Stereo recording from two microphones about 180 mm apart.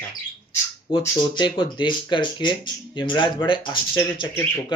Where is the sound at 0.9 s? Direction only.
25° left (ahead or behind).